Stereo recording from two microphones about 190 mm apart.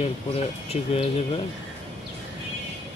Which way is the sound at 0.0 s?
30° left (ahead or behind).